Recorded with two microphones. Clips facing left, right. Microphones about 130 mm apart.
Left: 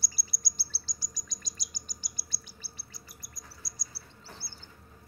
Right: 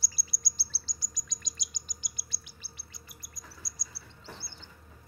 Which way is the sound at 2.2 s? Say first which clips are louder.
Left 1 dB; 30° left (ahead or behind).